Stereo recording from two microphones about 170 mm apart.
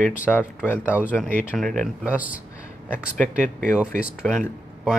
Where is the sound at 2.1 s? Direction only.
10° right (ahead or behind).